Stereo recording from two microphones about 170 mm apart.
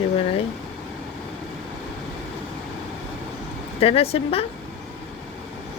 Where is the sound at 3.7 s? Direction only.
35° left (ahead or behind).